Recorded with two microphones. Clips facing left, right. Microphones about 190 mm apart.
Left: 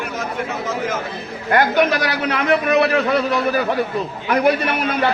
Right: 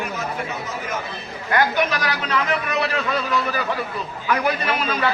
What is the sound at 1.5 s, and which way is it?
A man's voice, 55° left (ahead or behind).